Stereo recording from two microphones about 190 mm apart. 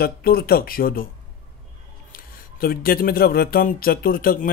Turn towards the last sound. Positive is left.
turn(degrees=50)  # may be behind; listen again after turning